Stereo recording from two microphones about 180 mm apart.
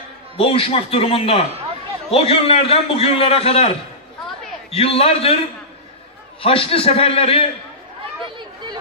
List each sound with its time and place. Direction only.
0.4 s a man's voice: 30° left (ahead or behind)
6.4 s a man's voice: 30° left (ahead or behind)